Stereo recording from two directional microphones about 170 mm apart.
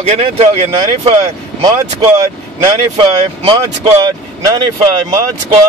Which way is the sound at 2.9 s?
30° right (ahead or behind).